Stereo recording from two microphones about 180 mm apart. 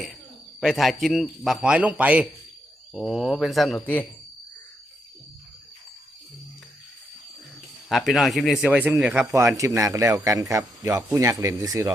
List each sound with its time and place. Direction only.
0.6 s a man's voice: centre (ahead or behind)
7.9 s a man's voice: centre (ahead or behind); by 11.9 s 20° right (ahead or behind)